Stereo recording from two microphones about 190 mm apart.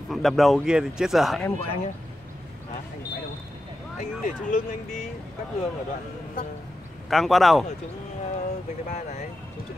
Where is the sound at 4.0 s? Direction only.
40° left (ahead or behind).